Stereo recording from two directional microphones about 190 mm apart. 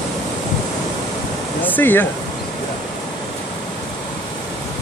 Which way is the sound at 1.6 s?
10° left (ahead or behind).